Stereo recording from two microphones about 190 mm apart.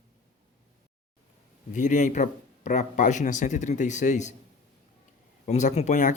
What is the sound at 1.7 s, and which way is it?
Speech, 40° left (ahead or behind).